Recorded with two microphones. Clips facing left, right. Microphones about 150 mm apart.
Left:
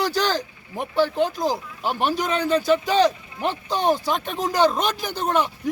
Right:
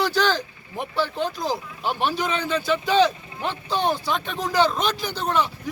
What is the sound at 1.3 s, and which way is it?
A man's voice, 45° left (ahead or behind).